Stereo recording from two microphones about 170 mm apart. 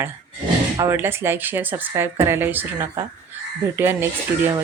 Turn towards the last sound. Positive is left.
turn(degrees=-10)  # may be behind; listen again after turning